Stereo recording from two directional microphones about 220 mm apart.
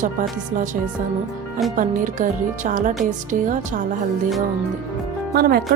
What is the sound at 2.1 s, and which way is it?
Speech, 35° right (ahead or behind).